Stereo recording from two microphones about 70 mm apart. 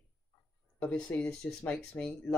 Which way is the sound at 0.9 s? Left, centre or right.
Centre.